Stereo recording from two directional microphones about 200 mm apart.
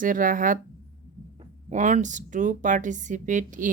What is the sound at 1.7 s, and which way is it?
Speech, 40° right (ahead or behind).